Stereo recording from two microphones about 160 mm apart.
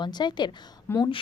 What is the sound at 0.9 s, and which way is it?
Speech, 15° left (ahead or behind).